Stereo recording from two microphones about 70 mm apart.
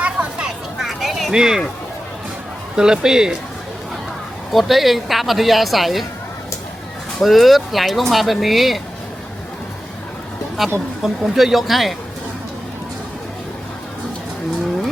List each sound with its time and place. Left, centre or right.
0.0 s a sound: centre
0.8 s a sound: centre
2.7 s a man's voice: centre
4.5 s speech: centre
7.2 s speech: centre
10.6 s speech: centre